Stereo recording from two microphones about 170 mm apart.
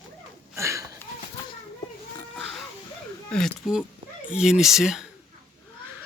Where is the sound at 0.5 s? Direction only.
15° right (ahead or behind).